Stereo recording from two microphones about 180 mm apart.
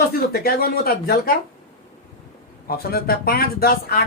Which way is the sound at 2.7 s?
60° left (ahead or behind).